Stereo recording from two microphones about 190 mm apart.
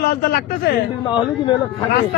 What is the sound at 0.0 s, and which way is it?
Speech, 50° left (ahead or behind).